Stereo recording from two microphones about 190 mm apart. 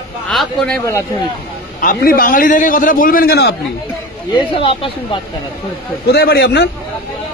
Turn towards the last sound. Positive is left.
turn(degrees=60)  # may be behind; listen again after turning